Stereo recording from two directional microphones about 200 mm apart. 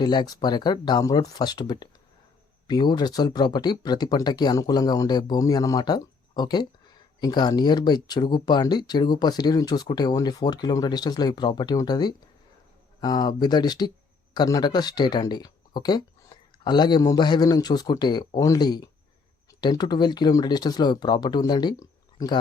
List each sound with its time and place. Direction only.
0.0 s speech: 20° left (ahead or behind)